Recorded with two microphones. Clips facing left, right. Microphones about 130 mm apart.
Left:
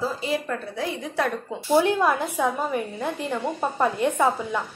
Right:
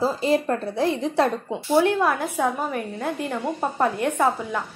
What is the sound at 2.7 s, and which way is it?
A woman's voice, centre (ahead or behind).